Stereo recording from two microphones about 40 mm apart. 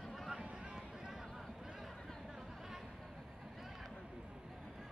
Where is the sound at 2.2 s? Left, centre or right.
Centre.